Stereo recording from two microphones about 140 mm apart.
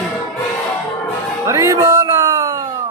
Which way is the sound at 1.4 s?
20° right (ahead or behind).